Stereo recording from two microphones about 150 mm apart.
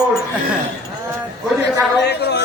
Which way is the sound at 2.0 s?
90° left.